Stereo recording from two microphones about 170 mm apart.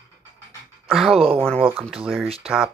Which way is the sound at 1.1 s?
35° right (ahead or behind).